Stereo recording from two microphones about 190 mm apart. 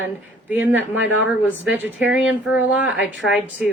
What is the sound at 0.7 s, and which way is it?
A woman's voice, 10° right (ahead or behind).